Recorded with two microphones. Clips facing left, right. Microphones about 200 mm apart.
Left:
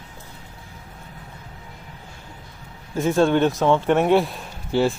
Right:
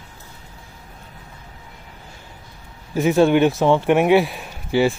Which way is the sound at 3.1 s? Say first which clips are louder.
Right 3 dB; 10° right (ahead or behind).